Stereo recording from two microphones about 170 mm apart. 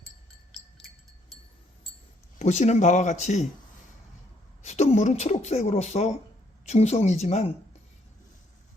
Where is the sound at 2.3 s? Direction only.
45° left (ahead or behind).